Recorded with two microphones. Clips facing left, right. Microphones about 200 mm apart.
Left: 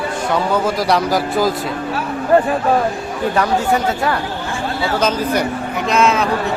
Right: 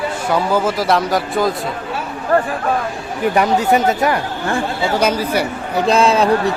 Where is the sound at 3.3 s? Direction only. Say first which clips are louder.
Right 2 dB; 20° right (ahead or behind).